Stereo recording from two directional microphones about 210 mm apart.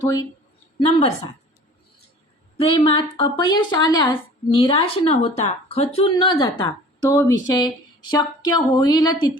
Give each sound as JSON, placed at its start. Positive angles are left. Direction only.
{"t": 0.0, "sound": "speech", "side_deg": 20}
{"t": 2.6, "sound": "a woman's voice", "side_deg": 25}